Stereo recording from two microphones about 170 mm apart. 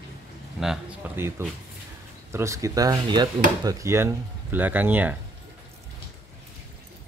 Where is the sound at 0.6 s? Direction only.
5° right (ahead or behind).